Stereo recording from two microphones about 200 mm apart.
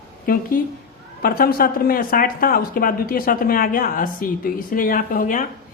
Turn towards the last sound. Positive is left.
turn(degrees=40)  # may be behind; listen again after turning